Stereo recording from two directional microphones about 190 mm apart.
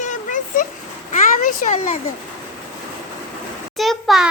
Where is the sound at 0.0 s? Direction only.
40° left (ahead or behind).